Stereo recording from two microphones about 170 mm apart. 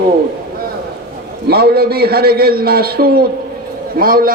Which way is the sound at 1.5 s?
65° right (ahead or behind).